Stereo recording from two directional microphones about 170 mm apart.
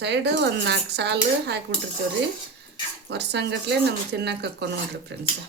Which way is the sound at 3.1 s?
85° right.